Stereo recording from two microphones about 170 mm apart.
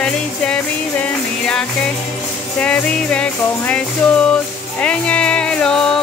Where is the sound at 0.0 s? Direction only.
5° left (ahead or behind).